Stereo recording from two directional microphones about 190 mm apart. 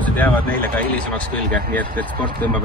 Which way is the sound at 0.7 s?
5° left (ahead or behind).